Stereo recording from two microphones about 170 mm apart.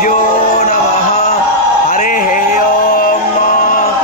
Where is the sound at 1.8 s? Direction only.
55° left (ahead or behind).